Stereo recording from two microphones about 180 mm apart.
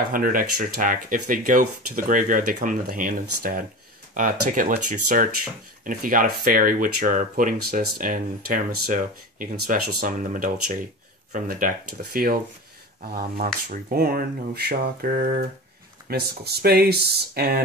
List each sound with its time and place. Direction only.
0.1 s speech: 50° right (ahead or behind)